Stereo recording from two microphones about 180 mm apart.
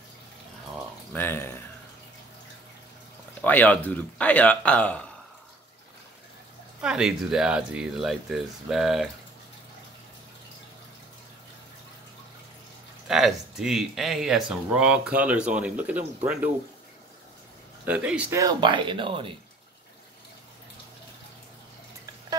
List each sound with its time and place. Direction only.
1.1 s speech: 10° left (ahead or behind)
3.4 s speech: 10° left (ahead or behind)
6.8 s speech: 5° right (ahead or behind)
13.1 s speech: centre (ahead or behind)
17.8 s speech: 5° right (ahead or behind)
18.4 s speech: 25° right (ahead or behind)